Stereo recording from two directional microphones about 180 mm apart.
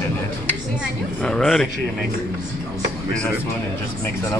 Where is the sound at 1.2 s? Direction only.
5° left (ahead or behind).